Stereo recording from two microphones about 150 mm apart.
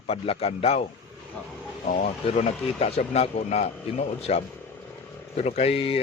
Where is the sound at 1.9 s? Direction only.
50° left (ahead or behind).